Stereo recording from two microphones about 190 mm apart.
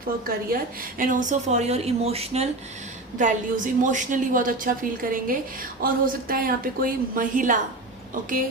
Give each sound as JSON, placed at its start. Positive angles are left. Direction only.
{"t": 0.3, "sound": "a woman's voice", "side_deg": -50}